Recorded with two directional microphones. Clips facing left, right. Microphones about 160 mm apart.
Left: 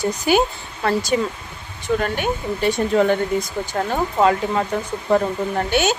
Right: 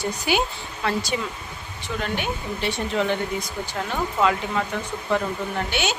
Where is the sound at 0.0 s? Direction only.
45° left (ahead or behind).